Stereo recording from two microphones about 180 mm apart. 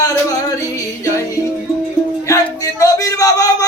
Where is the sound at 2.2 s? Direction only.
20° left (ahead or behind).